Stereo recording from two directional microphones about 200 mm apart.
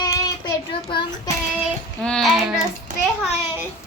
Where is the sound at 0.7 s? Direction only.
25° left (ahead or behind).